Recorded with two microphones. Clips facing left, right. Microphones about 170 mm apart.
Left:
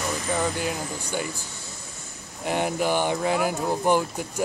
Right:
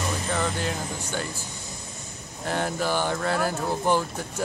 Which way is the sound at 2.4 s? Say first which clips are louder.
Left 2 dB; 15° left (ahead or behind).